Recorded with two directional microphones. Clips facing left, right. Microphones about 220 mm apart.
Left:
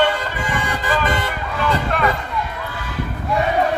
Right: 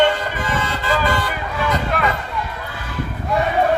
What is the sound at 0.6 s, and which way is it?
Vehicle, 20° left (ahead or behind).